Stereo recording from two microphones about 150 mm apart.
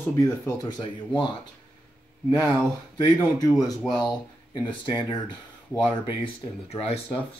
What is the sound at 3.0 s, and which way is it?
Speech, 25° left (ahead or behind).